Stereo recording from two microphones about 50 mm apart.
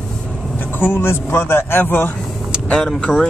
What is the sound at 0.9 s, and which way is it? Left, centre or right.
Speech, left.